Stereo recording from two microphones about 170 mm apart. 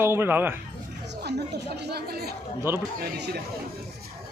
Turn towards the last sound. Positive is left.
turn(degrees=-70)  # may be behind; listen again after turning